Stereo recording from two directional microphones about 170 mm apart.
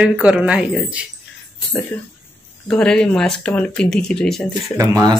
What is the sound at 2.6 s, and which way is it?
Speech, 5° left (ahead or behind).